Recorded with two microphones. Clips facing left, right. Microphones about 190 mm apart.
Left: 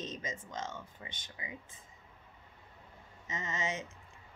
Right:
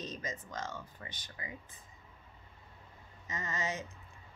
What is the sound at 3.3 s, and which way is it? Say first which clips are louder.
Speech: even; 25° left (ahead or behind).